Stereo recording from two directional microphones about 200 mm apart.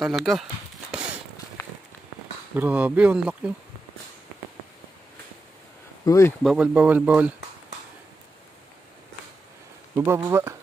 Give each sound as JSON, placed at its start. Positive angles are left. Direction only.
{"t": 0.0, "sound": "speech", "side_deg": 0}
{"t": 2.5, "sound": "speech", "side_deg": -10}
{"t": 6.0, "sound": "speech", "side_deg": 15}
{"t": 6.4, "sound": "speech", "side_deg": -5}
{"t": 9.9, "sound": "speech", "side_deg": -15}